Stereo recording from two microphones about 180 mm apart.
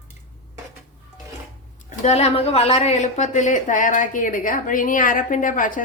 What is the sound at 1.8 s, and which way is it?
A woman's voice, 40° left (ahead or behind).